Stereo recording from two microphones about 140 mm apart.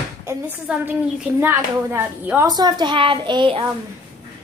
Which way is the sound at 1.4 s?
15° right (ahead or behind).